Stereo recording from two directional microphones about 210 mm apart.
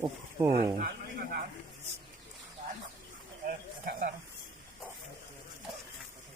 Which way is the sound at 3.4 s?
45° right (ahead or behind).